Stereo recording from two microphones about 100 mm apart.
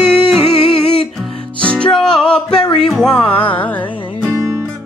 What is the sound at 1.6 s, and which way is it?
Music, 10° left (ahead or behind).